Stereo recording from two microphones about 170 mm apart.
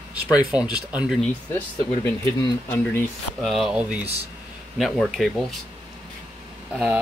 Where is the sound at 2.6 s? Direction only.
15° left (ahead or behind).